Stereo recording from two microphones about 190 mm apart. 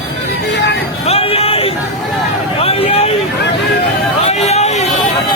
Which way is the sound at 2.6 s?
30° left (ahead or behind).